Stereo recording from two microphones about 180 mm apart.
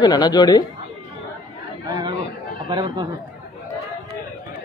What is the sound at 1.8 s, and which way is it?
Chatter, 20° right (ahead or behind).